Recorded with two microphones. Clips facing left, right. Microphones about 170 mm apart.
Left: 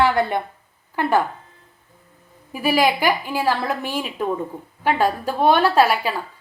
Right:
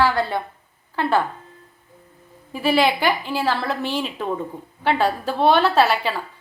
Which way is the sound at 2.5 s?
10° left (ahead or behind).